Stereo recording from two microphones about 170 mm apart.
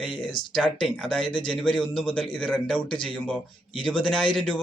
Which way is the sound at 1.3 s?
30° left (ahead or behind).